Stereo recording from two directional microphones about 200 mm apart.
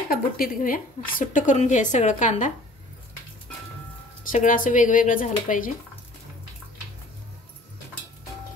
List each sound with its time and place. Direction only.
0.1 s a woman's voice: 45° left (ahead or behind)
4.3 s a woman's voice: 40° left (ahead or behind)